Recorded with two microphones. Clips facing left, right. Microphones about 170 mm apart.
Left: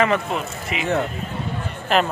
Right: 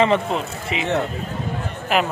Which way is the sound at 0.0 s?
30° right (ahead or behind).